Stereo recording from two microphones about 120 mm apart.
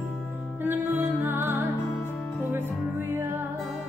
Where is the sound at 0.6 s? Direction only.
15° right (ahead or behind).